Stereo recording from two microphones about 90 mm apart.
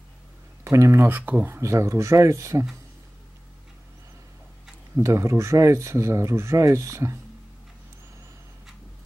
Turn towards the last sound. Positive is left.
turn(degrees=-35)  # may be behind; listen again after turning